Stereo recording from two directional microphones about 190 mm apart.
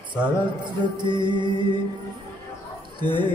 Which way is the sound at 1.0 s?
25° right (ahead or behind).